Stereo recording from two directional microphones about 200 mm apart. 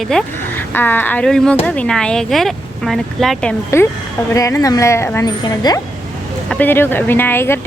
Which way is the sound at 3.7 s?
15° left (ahead or behind).